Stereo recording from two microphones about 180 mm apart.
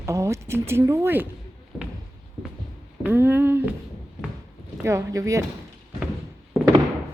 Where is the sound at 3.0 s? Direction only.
10° right (ahead or behind).